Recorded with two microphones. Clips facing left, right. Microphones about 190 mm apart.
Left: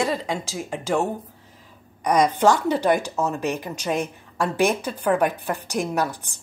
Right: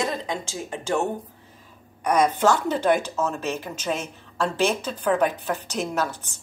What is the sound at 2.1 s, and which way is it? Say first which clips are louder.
Speech: left 2 dB; 15° left (ahead or behind).